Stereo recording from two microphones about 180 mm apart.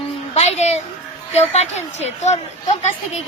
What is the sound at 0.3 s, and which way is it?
A child's voice, 35° left (ahead or behind).